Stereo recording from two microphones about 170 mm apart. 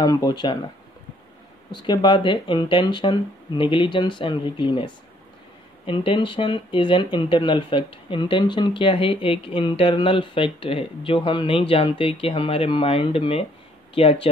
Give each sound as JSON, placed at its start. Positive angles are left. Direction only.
{"t": 0.0, "sound": "speech", "side_deg": 20}
{"t": 1.7, "sound": "speech", "side_deg": 25}